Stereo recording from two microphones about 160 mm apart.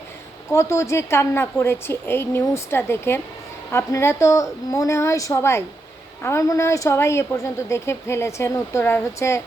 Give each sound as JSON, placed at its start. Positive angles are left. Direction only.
{"t": 0.5, "sound": "a woman's voice", "side_deg": 20}